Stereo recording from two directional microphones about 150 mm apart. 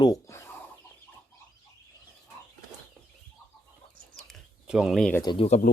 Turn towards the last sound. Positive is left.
turn(degrees=30)  # may be behind; listen again after turning